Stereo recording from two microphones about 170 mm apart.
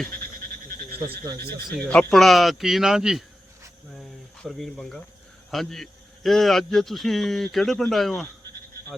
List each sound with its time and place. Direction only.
0.9 s frog: 60° right (ahead or behind)
1.9 s a man's voice: 5° left (ahead or behind)
4.4 s a man's voice: centre (ahead or behind)